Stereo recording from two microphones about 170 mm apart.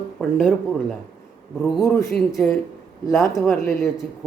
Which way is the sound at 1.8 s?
15° left (ahead or behind).